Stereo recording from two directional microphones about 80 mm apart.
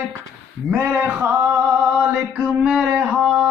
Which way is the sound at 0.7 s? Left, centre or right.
Right.